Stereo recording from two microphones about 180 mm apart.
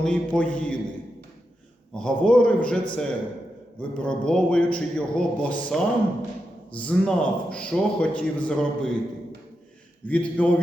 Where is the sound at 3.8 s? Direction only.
5° left (ahead or behind).